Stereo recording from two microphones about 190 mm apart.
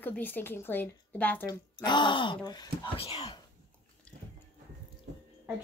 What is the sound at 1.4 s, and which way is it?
Speech, 25° left (ahead or behind).